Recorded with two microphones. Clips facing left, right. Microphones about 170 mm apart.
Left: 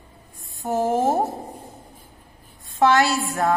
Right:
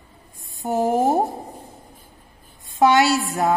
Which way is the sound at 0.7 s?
15° right (ahead or behind).